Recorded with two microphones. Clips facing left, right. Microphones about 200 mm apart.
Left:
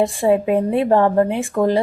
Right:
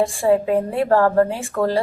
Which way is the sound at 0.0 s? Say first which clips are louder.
Left 1 dB; 20° left (ahead or behind).